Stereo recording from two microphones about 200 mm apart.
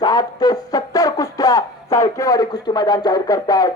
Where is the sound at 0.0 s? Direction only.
20° left (ahead or behind).